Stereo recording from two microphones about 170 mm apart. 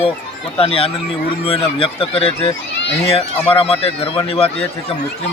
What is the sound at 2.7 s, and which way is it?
Speech, 90° left.